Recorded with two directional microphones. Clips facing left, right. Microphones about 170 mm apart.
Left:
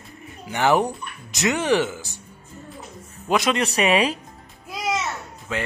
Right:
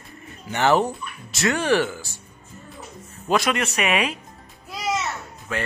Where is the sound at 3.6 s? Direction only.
35° left (ahead or behind).